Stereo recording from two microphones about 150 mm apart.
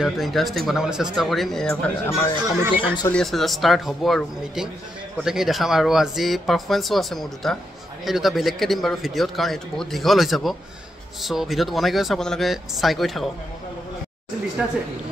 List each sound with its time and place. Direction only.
0.0 s speech: centre (ahead or behind)
2.0 s speech: 20° left (ahead or behind)
2.7 s speech: 35° left (ahead or behind)
3.1 s speech: 5° left (ahead or behind)